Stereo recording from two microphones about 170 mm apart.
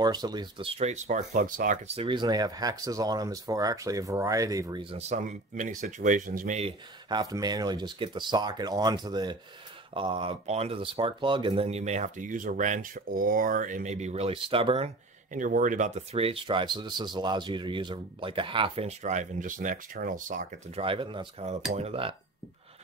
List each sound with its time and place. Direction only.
0.0 s speech: 25° right (ahead or behind); by 1.2 s 40° right (ahead or behind)
1.3 s speech: 50° right (ahead or behind)
2.0 s speech: 30° right (ahead or behind)
4.9 s speech: 45° right (ahead or behind)
6.6 s speech: 25° right (ahead or behind)
15.3 s speech: 50° right (ahead or behind)
20.8 s speech: 30° right (ahead or behind)